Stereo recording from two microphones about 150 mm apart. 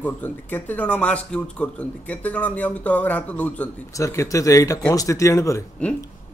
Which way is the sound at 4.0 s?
20° left (ahead or behind).